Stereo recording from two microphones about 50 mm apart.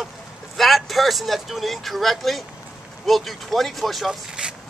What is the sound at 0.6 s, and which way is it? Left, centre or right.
Speech, centre.